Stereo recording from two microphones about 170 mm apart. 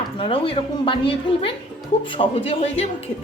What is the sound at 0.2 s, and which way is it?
A woman's voice, 30° left (ahead or behind).